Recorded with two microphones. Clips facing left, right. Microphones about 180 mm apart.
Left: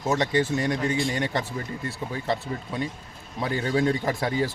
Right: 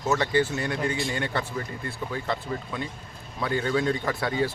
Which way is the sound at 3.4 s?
30° left (ahead or behind).